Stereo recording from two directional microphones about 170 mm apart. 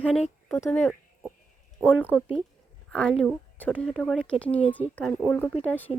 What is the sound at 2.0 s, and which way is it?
Speech, 10° left (ahead or behind).